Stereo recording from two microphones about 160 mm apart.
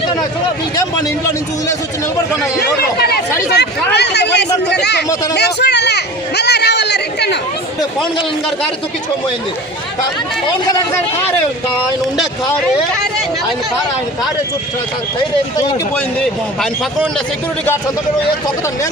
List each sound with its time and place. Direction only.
2.6 s speech: 80° left
3.5 s speech: 90° left
5.3 s a sound: 90° left
16.6 s speech: centre (ahead or behind)